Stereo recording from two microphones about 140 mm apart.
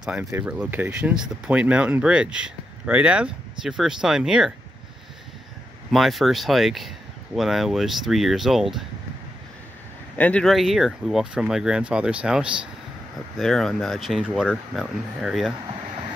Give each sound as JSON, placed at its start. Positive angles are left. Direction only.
{"t": 0.0, "sound": "speech", "side_deg": -5}
{"t": 5.9, "sound": "speech", "side_deg": 0}
{"t": 10.1, "sound": "speech", "side_deg": 10}